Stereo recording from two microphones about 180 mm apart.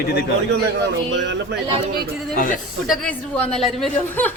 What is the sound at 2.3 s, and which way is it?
Speech, 50° left (ahead or behind).